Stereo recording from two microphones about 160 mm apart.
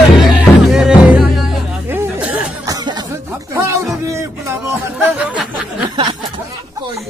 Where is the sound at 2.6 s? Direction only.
25° right (ahead or behind).